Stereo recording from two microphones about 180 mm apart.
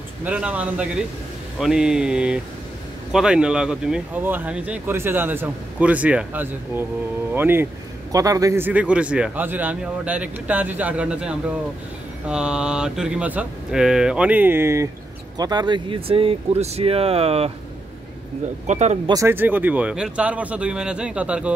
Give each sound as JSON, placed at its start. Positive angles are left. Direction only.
{"t": 0.2, "sound": "speech", "side_deg": -10}
{"t": 18.7, "sound": "speech", "side_deg": -40}
{"t": 19.0, "sound": "speech", "side_deg": -15}